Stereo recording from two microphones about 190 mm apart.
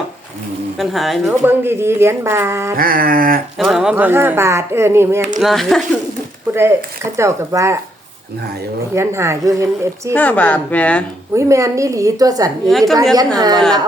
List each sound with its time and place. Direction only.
0.8 s speech: centre (ahead or behind)
1.6 s speech: 15° right (ahead or behind)
2.7 s a sound: 50° right (ahead or behind)
3.6 s speech: 5° right (ahead or behind)
5.4 s speech: centre (ahead or behind)
6.5 s speech: 15° right (ahead or behind)
9.0 s speech: 15° right (ahead or behind)
10.2 s speech: 10° left (ahead or behind)
11.3 s a woman's voice: 15° right (ahead or behind)